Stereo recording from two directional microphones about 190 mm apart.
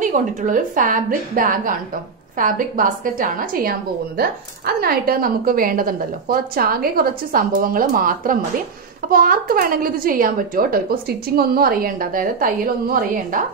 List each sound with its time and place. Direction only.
0.0 s a woman's voice: 40° right (ahead or behind)